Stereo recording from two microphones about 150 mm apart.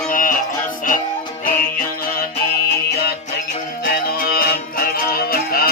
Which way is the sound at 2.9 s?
90° left.